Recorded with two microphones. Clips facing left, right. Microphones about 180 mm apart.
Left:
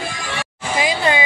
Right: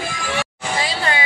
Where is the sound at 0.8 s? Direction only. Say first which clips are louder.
Left 5 dB; 15° left (ahead or behind).